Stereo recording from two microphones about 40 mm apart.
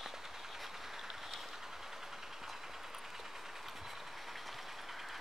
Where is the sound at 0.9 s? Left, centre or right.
Centre.